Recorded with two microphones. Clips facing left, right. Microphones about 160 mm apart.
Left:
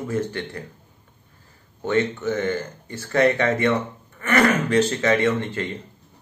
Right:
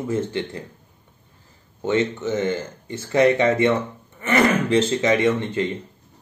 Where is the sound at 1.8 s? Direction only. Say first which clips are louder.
Even; 20° right (ahead or behind).